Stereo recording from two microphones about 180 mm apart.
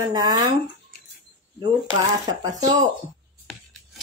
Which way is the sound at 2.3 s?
20° right (ahead or behind).